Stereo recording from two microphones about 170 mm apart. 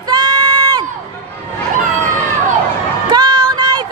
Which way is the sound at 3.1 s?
25° right (ahead or behind).